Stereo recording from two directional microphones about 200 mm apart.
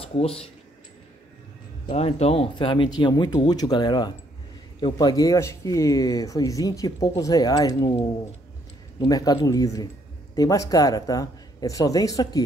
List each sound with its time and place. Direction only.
0.0 s speech: 30° left (ahead or behind)
1.9 s speech: 30° left (ahead or behind)
9.0 s speech: 20° left (ahead or behind)